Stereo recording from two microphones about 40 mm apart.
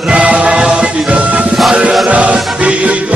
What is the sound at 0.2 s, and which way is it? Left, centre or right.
Music, right.